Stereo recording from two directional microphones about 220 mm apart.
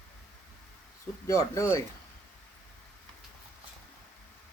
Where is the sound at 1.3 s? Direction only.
15° left (ahead or behind).